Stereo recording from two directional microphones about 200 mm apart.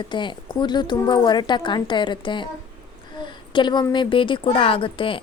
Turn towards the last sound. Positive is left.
turn(degrees=25)  # may be behind; listen again after turning